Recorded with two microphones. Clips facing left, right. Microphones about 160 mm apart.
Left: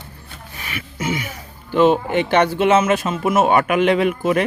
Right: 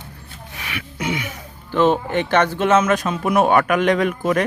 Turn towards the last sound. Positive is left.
turn(degrees=10)  # may be behind; listen again after turning